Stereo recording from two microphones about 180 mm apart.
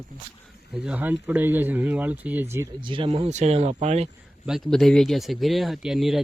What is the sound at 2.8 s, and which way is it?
Speech, 30° right (ahead or behind).